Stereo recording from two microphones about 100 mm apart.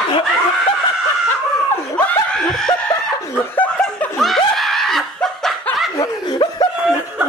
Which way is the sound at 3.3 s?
15° left (ahead or behind).